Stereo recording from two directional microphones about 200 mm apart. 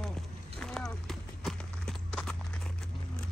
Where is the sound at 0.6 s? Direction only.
Centre (ahead or behind).